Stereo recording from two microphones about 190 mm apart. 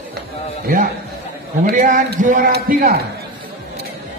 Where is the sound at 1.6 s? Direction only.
45° right (ahead or behind).